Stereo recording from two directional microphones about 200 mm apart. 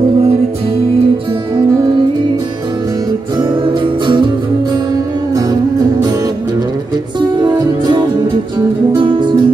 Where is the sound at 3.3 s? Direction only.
25° right (ahead or behind).